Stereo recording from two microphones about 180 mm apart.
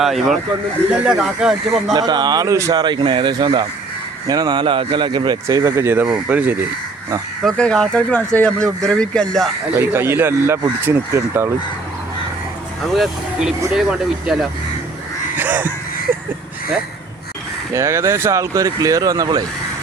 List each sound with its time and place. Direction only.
0.0 s speech: centre (ahead or behind)
1.9 s speech: 20° right (ahead or behind)
7.4 s speech: 5° left (ahead or behind)
9.7 s speech: 15° right (ahead or behind)
12.9 s speech: centre (ahead or behind)
15.4 s crow: 10° right (ahead or behind)
17.7 s speech: 15° right (ahead or behind)